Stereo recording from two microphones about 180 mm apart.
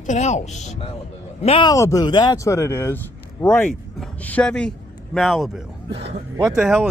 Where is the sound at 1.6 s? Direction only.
20° left (ahead or behind); by 5.6 s centre (ahead or behind).